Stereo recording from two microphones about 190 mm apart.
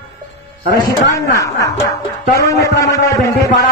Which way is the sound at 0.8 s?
15° left (ahead or behind).